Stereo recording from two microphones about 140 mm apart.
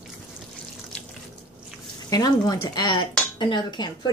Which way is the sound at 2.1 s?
30° left (ahead or behind).